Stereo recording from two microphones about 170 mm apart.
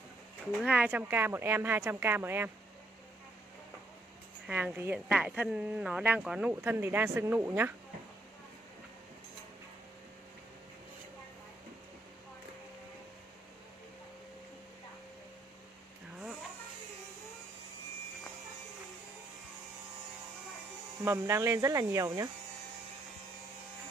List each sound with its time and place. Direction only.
0.6 s speech: 10° right (ahead or behind)
4.5 s speech: 10° right (ahead or behind)
21.0 s speech: 15° right (ahead or behind)